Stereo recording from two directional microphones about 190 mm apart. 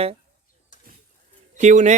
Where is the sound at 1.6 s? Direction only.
40° right (ahead or behind).